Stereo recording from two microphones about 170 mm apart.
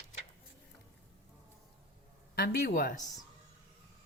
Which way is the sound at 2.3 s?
70° left (ahead or behind).